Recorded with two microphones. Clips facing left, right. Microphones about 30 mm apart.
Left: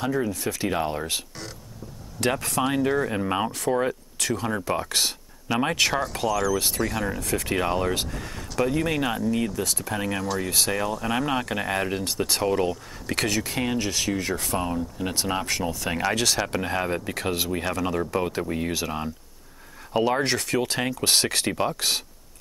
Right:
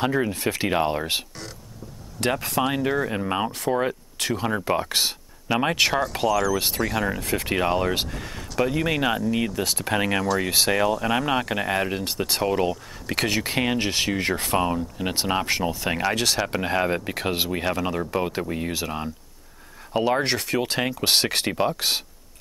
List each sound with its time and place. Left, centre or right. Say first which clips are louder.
0.0 s speech: right 3 dB; right
2.1 s speech: right 1 dB; centre
7.2 s speech: right 1 dB; right
7.5 s speech: right 2 dB; centre
9.6 s speech: right 3 dB; right
9.9 s speech: right 5 dB; centre
10.2 s speech: right 4 dB; centre
13.3 s speech: right 2 dB; right
15.0 s speech: right 3 dB; right